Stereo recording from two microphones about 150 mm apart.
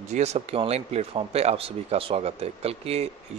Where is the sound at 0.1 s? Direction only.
45° right (ahead or behind).